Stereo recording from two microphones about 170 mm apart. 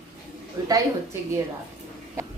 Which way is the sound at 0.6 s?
20° right (ahead or behind).